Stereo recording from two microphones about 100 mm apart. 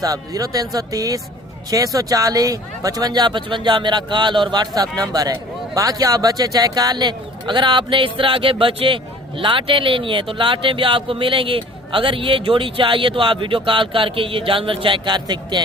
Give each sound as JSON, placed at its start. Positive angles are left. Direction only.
{"t": 0.0, "sound": "speech", "side_deg": -35}